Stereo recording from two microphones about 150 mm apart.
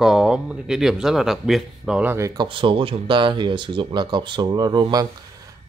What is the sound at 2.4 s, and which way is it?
Speech, 35° right (ahead or behind).